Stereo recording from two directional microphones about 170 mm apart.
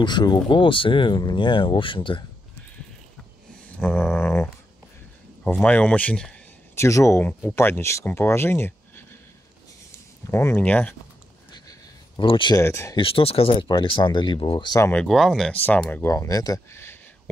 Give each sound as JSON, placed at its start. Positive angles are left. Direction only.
{"t": 0.0, "sound": "speech", "side_deg": 25}
{"t": 3.8, "sound": "a sound", "side_deg": 5}
{"t": 5.4, "sound": "speech", "side_deg": 10}
{"t": 10.3, "sound": "speech", "side_deg": 10}
{"t": 12.2, "sound": "speech", "side_deg": 30}
{"t": 12.6, "sound": "speech", "side_deg": 15}
{"t": 12.9, "sound": "speech", "side_deg": 35}
{"t": 14.9, "sound": "speech", "side_deg": 5}